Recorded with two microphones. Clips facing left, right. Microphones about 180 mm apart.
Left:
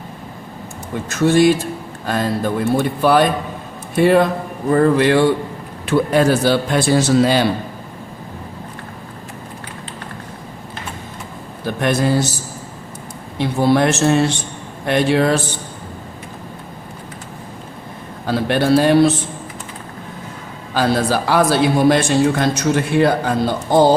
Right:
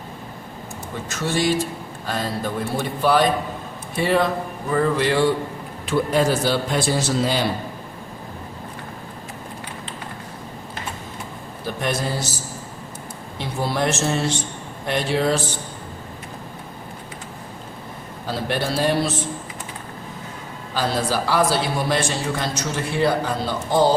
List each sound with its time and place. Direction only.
1.1 s a man's voice: 55° left (ahead or behind); by 7.4 s 75° left (ahead or behind)
11.8 s a man's voice: 60° left (ahead or behind)
13.4 s a man's voice: 65° left (ahead or behind)
18.3 s a man's voice: 60° left (ahead or behind)
20.7 s a man's voice: 60° left (ahead or behind)